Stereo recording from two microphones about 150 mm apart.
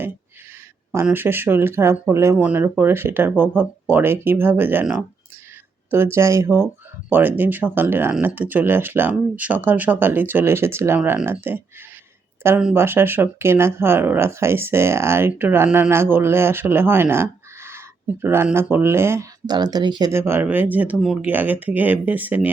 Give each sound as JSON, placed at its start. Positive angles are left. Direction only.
{"t": 1.0, "sound": "speech", "side_deg": -15}
{"t": 12.7, "sound": "speech", "side_deg": -15}
{"t": 20.1, "sound": "speech", "side_deg": -15}